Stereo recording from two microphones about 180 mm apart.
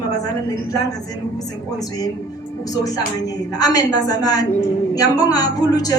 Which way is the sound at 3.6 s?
20° left (ahead or behind).